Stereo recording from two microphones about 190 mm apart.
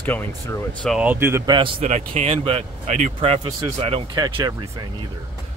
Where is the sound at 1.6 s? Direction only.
35° right (ahead or behind).